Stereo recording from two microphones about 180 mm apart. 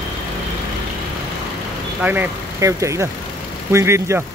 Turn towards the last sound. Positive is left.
turn(degrees=-15)  # may be behind; listen again after turning